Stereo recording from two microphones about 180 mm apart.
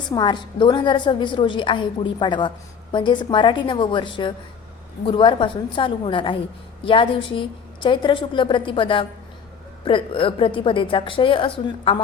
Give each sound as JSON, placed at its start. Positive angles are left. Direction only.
{"t": 0.1, "sound": "a woman's voice", "side_deg": 25}